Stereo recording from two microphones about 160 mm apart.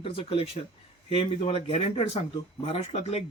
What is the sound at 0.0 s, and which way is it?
Speech, 35° left (ahead or behind).